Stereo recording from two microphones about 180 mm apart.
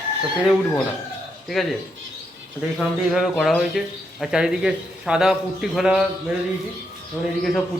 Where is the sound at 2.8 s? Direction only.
Centre (ahead or behind).